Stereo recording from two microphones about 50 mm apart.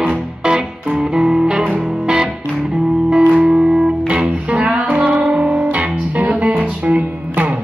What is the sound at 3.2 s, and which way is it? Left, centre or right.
Music, right.